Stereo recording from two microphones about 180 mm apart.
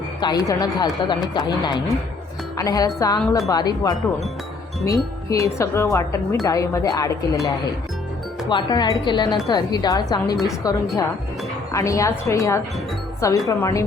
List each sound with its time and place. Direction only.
0.2 s a woman's voice: 20° left (ahead or behind)